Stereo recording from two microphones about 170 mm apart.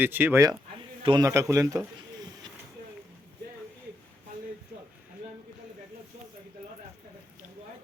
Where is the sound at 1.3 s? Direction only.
15° right (ahead or behind).